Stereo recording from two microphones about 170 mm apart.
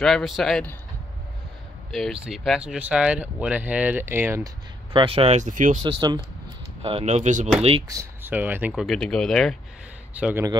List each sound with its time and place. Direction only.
0.0 s speech: centre (ahead or behind)
1.9 s speech: centre (ahead or behind)
4.9 s speech: 35° right (ahead or behind); by 5.8 s 50° right (ahead or behind)
5.9 s speech: 25° right (ahead or behind); by 7.4 s 45° right (ahead or behind)
7.9 s speech: 15° right (ahead or behind)
8.8 s speech: 5° left (ahead or behind)
10.1 s speech: 10° right (ahead or behind)